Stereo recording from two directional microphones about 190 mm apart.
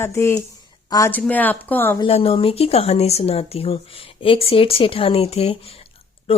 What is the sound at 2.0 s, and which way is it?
Speech, 30° left (ahead or behind).